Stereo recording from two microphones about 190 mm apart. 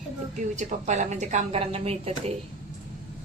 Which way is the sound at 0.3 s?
40° right (ahead or behind).